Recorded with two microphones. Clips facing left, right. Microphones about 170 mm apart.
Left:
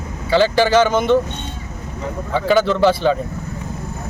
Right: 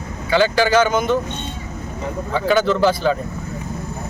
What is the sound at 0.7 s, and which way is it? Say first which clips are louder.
Speech: left 2 dB; centre (ahead or behind).